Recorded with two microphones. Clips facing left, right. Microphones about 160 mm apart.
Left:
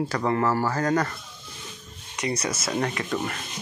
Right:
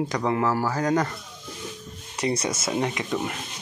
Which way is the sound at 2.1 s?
30° right (ahead or behind).